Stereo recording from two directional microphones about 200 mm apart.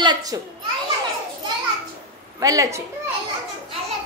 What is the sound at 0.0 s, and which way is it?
Speech, 20° right (ahead or behind).